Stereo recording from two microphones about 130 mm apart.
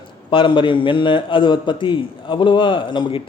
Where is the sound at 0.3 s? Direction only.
40° left (ahead or behind).